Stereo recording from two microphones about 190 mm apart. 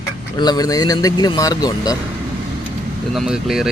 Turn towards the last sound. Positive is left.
turn(degrees=-5)  # may be behind; listen again after turning